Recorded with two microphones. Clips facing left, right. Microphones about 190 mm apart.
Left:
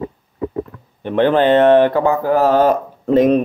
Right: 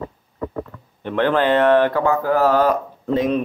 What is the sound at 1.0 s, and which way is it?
Speech, 20° left (ahead or behind).